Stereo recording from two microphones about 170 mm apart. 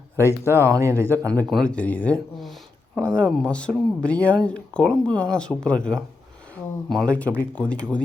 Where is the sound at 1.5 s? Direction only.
5° left (ahead or behind).